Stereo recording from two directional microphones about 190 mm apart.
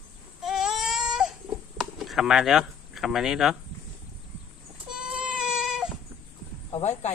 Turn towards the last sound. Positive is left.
turn(degrees=35)  # may be behind; listen again after turning